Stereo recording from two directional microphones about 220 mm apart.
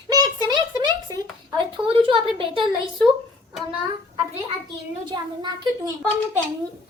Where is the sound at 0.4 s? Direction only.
20° right (ahead or behind).